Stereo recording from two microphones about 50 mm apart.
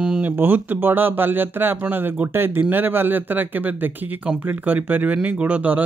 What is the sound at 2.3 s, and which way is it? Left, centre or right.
Speech, right.